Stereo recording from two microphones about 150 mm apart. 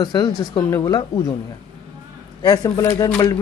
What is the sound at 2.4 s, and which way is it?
Speech, 25° left (ahead or behind).